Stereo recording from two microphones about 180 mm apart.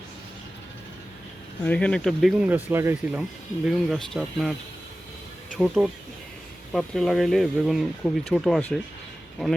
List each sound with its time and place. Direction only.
1.6 s speech: 5° left (ahead or behind); by 3.2 s 10° right (ahead or behind)
3.7 s speech: centre (ahead or behind)
5.5 s speech: centre (ahead or behind)